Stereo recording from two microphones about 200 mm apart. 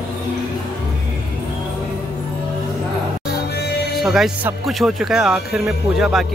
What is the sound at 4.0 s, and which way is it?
Speech, centre (ahead or behind).